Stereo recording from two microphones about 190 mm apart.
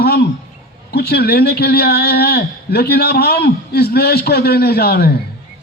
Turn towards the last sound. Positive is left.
turn(degrees=55)  # may be behind; listen again after turning